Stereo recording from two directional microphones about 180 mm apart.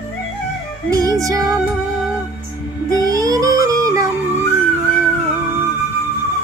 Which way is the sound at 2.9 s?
20° right (ahead or behind).